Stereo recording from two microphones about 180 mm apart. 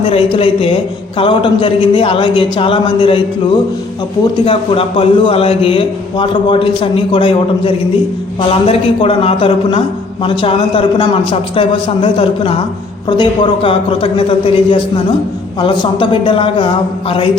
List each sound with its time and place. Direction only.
0.1 s a woman's voice: 30° left (ahead or behind)
4.4 s a man's voice: 30° left (ahead or behind)